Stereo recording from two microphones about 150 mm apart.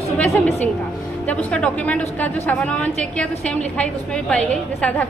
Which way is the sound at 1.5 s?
10° left (ahead or behind).